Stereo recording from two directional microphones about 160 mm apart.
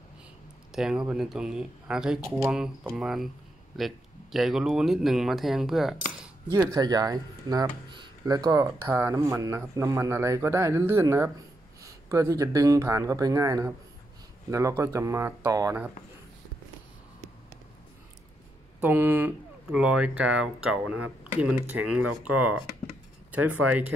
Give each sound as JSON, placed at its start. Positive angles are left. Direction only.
{"t": 0.7, "sound": "speech", "side_deg": -5}
{"t": 6.5, "sound": "speech", "side_deg": -25}
{"t": 18.8, "sound": "speech", "side_deg": -10}